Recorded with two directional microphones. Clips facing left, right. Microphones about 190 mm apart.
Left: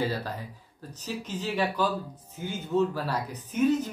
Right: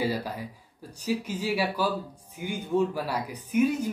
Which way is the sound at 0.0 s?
10° right (ahead or behind).